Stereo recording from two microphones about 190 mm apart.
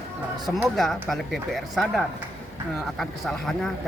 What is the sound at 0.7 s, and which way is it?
Speech, centre (ahead or behind).